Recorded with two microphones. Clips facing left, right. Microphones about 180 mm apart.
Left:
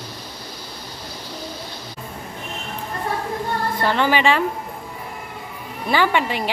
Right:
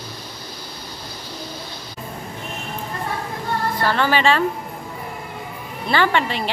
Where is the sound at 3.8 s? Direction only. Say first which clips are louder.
Even; 15° left (ahead or behind).